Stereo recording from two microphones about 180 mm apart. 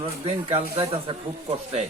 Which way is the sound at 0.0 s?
30° right (ahead or behind).